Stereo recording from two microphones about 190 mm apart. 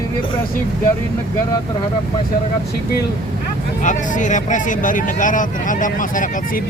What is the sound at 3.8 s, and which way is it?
Speech, 40° left (ahead or behind).